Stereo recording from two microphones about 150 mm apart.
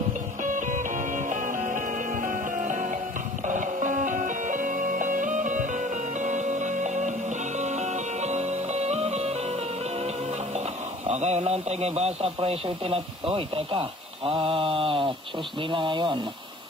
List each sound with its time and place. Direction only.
0.4 s music: 60° right (ahead or behind)
11.1 s speech: 45° right (ahead or behind)